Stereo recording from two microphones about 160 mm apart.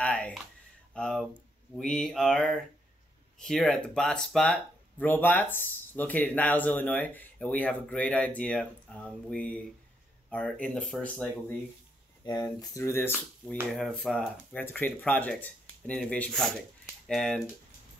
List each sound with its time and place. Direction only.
0.0 s speech: 5° left (ahead or behind)
12.3 s speech: 20° left (ahead or behind)
13.7 s speech: centre (ahead or behind)